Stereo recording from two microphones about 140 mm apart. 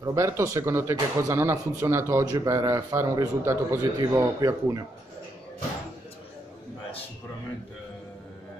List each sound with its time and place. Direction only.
0.0 s speech: 20° right (ahead or behind)